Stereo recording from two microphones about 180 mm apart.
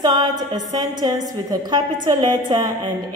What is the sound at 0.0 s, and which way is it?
A woman's voice, 25° right (ahead or behind).